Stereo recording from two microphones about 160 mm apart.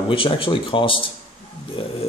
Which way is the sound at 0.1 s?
35° left (ahead or behind).